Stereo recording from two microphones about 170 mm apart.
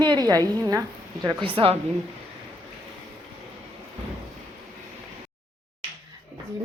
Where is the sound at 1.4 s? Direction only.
30° right (ahead or behind).